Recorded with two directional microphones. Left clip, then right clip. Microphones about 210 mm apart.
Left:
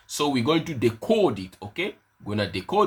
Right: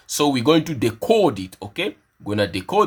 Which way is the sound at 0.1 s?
35° right (ahead or behind).